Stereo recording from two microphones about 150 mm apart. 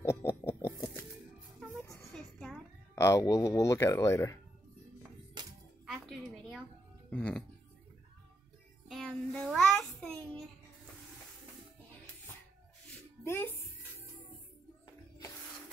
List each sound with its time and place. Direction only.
0.0 s music: 15° left (ahead or behind)
2.1 s a sound: 5° left (ahead or behind)
3.0 s speech: 20° left (ahead or behind)
5.4 s music: 30° right (ahead or behind)
6.0 s a sound: centre (ahead or behind)
7.1 s music: 10° left (ahead or behind)
8.8 s music: centre (ahead or behind)
9.5 s a sound: 5° left (ahead or behind)
13.2 s music: 15° left (ahead or behind)